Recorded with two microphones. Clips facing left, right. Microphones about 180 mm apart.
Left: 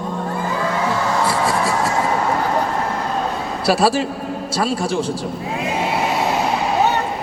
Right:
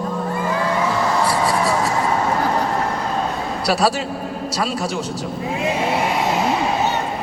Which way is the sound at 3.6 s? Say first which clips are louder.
Left 3 dB; 30° left (ahead or behind).